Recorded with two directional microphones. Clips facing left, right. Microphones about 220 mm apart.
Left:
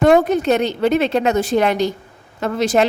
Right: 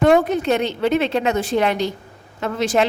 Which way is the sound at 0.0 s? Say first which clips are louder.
Left 2 dB; 40° left (ahead or behind).